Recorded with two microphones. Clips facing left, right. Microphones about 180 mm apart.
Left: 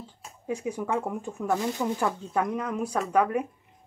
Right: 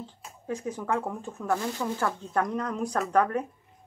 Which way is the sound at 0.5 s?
10° left (ahead or behind).